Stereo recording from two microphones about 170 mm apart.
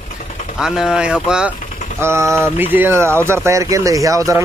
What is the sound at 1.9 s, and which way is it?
Speech, 15° right (ahead or behind).